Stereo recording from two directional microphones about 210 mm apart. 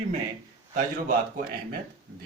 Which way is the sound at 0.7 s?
40° right (ahead or behind).